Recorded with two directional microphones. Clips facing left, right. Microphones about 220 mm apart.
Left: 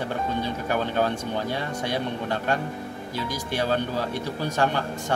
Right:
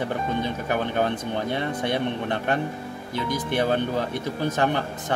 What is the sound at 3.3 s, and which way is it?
Speech, 55° right (ahead or behind).